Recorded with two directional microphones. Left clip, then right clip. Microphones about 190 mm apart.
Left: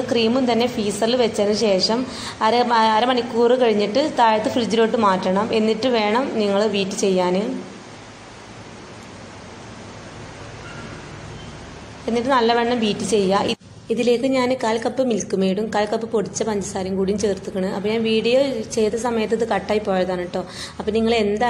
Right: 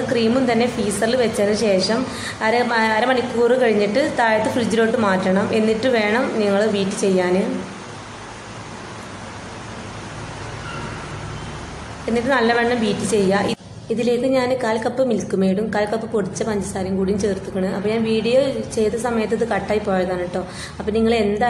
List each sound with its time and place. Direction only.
0.1 s a woman's voice: 15° left (ahead or behind)
12.1 s a woman's voice: 15° left (ahead or behind)